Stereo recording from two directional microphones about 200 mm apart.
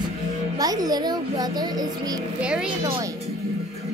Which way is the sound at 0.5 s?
20° right (ahead or behind).